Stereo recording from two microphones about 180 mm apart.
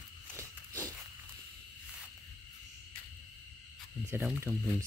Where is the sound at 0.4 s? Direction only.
15° right (ahead or behind).